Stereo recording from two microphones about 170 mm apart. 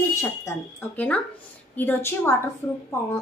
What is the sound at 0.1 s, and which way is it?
A woman's voice, 15° left (ahead or behind).